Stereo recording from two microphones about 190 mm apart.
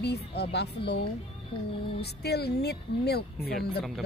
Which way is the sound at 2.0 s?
60° left (ahead or behind).